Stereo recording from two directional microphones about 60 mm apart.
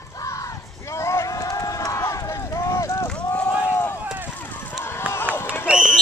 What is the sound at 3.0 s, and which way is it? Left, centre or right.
Run, left.